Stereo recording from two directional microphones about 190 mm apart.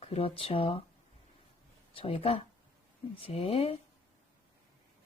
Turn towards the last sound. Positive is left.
turn(degrees=30)  # may be behind; listen again after turning